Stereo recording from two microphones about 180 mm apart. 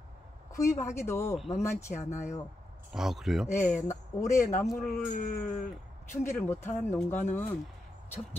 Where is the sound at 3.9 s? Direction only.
15° left (ahead or behind).